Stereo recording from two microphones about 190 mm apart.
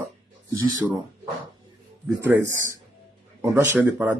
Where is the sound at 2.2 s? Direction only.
15° right (ahead or behind).